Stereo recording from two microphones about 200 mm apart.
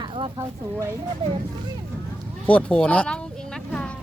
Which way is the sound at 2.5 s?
5° left (ahead or behind).